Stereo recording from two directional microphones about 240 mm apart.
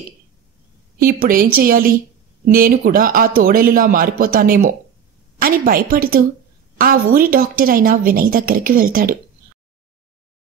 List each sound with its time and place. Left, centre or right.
0.9 s a woman's voice: right